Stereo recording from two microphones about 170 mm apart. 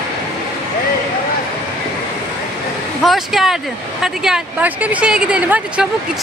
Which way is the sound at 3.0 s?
Centre (ahead or behind).